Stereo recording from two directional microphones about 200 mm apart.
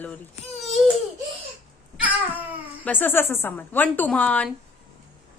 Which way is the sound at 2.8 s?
10° left (ahead or behind).